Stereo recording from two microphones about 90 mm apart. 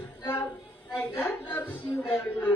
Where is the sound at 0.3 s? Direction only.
20° left (ahead or behind).